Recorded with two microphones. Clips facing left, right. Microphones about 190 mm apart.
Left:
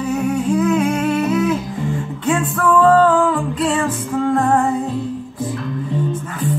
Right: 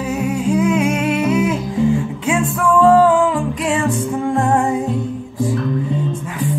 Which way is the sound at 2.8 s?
10° right (ahead or behind).